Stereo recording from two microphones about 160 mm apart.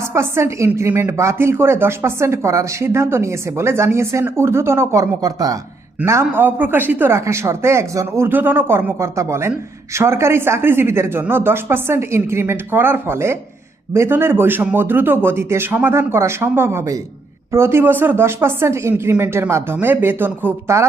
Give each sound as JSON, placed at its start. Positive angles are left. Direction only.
{"t": 0.0, "sound": "a woman's voice", "side_deg": -15}